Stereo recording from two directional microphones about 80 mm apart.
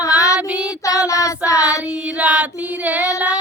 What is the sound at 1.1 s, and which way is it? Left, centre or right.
Child singing, left.